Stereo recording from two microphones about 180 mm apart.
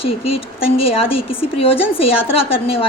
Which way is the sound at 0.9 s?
30° left (ahead or behind).